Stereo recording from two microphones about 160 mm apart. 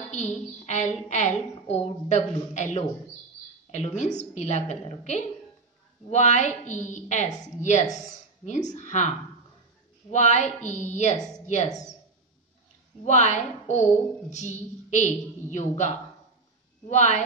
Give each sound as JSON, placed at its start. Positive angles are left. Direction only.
{"t": 0.1, "sound": "a woman's voice", "side_deg": 45}
{"t": 10.1, "sound": "a woman's voice", "side_deg": 45}
{"t": 13.0, "sound": "a woman's voice", "side_deg": 45}
{"t": 16.9, "sound": "a woman's voice", "side_deg": 45}